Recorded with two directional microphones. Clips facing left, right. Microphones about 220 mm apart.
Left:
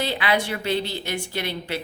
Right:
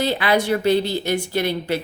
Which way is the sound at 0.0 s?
45° right (ahead or behind).